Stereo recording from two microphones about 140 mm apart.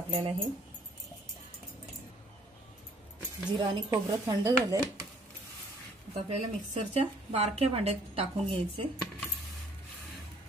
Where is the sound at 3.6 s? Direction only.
25° right (ahead or behind).